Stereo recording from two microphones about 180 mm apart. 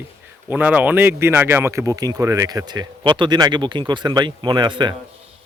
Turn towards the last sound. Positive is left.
turn(degrees=-25)  # may be behind; listen again after turning